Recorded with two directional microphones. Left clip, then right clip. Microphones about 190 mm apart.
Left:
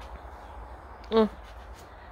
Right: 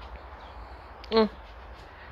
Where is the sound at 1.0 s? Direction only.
5° left (ahead or behind).